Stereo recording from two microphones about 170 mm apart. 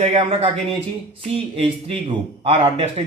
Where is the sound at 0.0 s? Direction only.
35° right (ahead or behind).